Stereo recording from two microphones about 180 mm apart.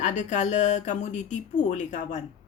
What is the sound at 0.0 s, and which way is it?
Speech, 40° left (ahead or behind).